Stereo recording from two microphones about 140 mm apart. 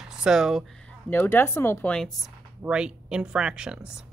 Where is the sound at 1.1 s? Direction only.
15° left (ahead or behind).